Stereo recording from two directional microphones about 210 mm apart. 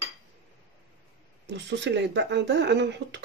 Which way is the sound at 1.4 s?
55° right (ahead or behind).